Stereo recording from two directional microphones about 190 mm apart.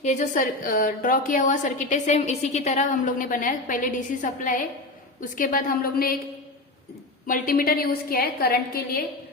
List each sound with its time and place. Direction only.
0.0 s a woman's voice: 40° left (ahead or behind)
7.3 s a woman's voice: 45° left (ahead or behind)